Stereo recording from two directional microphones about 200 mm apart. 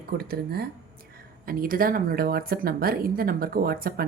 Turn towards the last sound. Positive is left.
turn(degrees=-50)  # may be behind; listen again after turning